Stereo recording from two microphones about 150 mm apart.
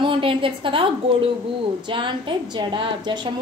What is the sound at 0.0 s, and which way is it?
A woman's voice, 35° right (ahead or behind).